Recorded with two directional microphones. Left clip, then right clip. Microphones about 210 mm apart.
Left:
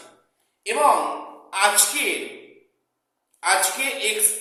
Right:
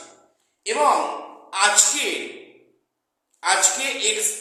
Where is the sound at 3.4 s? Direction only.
5° left (ahead or behind).